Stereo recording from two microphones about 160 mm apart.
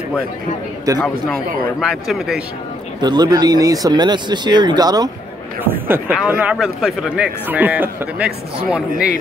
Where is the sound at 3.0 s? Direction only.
25° right (ahead or behind).